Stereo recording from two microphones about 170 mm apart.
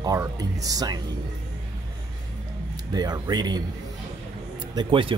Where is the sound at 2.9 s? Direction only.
25° right (ahead or behind).